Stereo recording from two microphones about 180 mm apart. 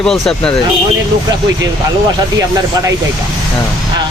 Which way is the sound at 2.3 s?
15° right (ahead or behind).